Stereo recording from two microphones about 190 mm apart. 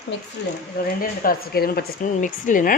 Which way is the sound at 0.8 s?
55° left (ahead or behind).